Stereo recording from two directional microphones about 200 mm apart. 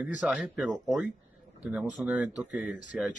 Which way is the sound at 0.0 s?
5° right (ahead or behind).